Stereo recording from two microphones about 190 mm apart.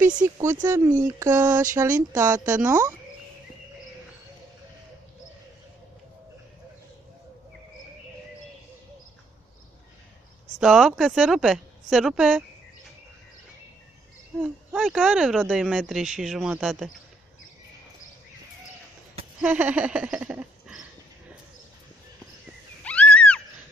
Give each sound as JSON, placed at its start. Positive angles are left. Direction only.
{"t": 0.4, "sound": "speech", "side_deg": -15}
{"t": 10.6, "sound": "speech", "side_deg": -5}
{"t": 14.4, "sound": "speech", "side_deg": -5}
{"t": 19.4, "sound": "a woman's voice", "side_deg": -5}
{"t": 22.8, "sound": "a sound", "side_deg": 5}